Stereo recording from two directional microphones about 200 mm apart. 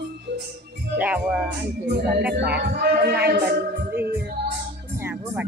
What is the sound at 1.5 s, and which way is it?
Speech, 55° right (ahead or behind).